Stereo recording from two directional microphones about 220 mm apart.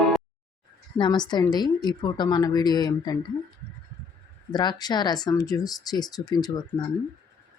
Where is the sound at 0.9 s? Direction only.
20° left (ahead or behind).